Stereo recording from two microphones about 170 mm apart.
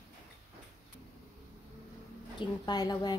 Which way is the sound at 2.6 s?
25° left (ahead or behind).